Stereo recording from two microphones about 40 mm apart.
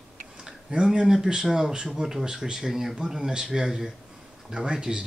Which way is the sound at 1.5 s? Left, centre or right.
Centre.